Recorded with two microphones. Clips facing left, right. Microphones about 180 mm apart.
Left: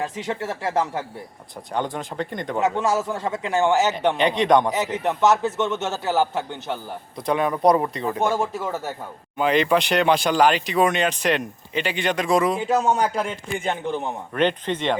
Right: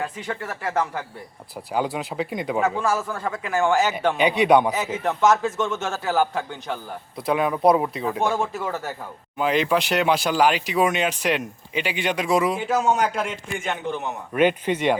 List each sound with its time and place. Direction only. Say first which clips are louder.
0.3 s a man's voice: left 3 dB; 25° left (ahead or behind)
1.7 s speech: right 2 dB; 5° right (ahead or behind)
2.6 s a man's voice: left 2 dB; 20° left (ahead or behind)
4.2 s speech: right 2 dB; 10° right (ahead or behind)
5.0 s a man's voice: even; 20° left (ahead or behind)
7.2 s speech: even; 5° right (ahead or behind)
13.6 s a man's voice: left 2 dB; 35° left (ahead or behind)
14.3 s speech: right 2 dB; 10° right (ahead or behind)